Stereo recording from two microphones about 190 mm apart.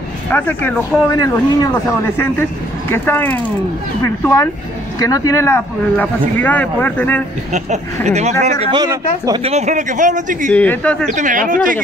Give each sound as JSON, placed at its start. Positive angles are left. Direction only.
{"t": 0.3, "sound": "speech", "side_deg": 10}
{"t": 1.1, "sound": "a man's voice", "side_deg": 20}
{"t": 7.5, "sound": "speech", "side_deg": -35}
{"t": 8.7, "sound": "speech", "side_deg": -20}
{"t": 9.4, "sound": "speech", "side_deg": -35}
{"t": 10.5, "sound": "speech", "side_deg": 10}
{"t": 11.1, "sound": "speech", "side_deg": -40}